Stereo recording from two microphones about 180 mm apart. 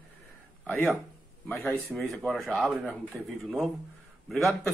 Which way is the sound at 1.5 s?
10° left (ahead or behind).